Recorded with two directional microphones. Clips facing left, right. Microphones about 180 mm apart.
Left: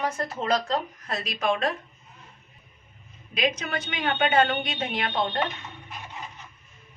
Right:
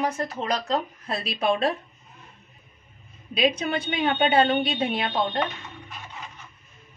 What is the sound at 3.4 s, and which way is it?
A woman's voice, 30° right (ahead or behind).